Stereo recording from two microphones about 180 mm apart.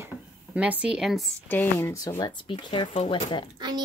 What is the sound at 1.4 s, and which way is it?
Speech, 10° left (ahead or behind).